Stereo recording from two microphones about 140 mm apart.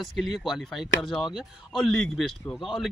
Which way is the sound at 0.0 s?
Centre (ahead or behind).